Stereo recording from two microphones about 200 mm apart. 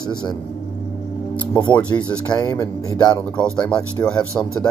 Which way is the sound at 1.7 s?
20° left (ahead or behind).